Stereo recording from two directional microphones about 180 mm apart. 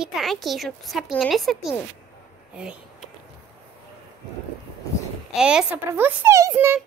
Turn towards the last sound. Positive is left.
turn(degrees=-10)  # may be behind; listen again after turning